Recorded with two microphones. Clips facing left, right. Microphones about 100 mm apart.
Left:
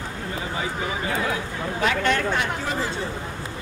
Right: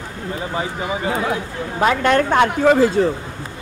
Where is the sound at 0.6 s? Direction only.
30° right (ahead or behind).